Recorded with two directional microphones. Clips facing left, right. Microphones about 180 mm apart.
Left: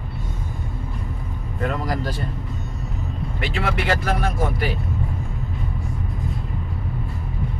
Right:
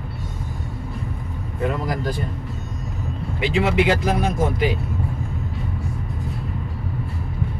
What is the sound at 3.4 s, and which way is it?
Speech, 15° right (ahead or behind).